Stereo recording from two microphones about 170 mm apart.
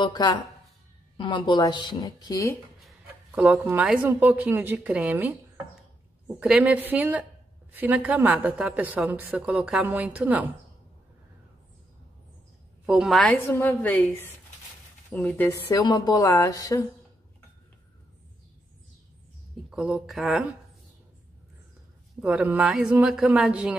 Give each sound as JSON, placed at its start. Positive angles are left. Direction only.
{"t": 0.0, "sound": "a woman's voice", "side_deg": 25}
{"t": 3.3, "sound": "a woman's voice", "side_deg": -10}
{"t": 6.4, "sound": "a woman's voice", "side_deg": -10}
{"t": 12.8, "sound": "a woman's voice", "side_deg": -5}
{"t": 15.7, "sound": "a woman's voice", "side_deg": 25}
{"t": 19.7, "sound": "speech", "side_deg": -5}
{"t": 22.2, "sound": "a woman's voice", "side_deg": -10}